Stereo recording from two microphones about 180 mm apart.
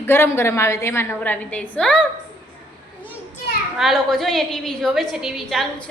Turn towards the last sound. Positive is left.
turn(degrees=0)  # may be behind; listen again after turning